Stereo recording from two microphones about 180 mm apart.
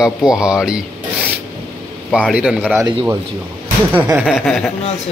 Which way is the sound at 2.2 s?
5° right (ahead or behind).